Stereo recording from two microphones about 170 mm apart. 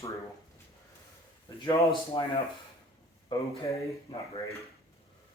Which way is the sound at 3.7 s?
20° left (ahead or behind).